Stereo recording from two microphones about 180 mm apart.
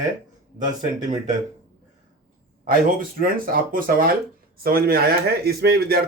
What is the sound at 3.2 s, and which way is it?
Speech, 50° right (ahead or behind).